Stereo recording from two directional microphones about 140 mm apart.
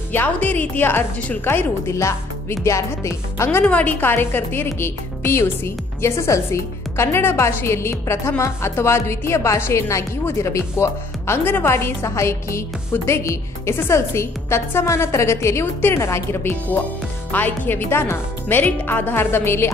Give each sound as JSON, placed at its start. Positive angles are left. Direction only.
{"t": 0.1, "sound": "a woman's voice", "side_deg": 15}